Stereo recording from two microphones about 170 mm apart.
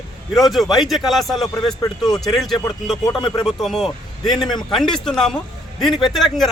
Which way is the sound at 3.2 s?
25° left (ahead or behind).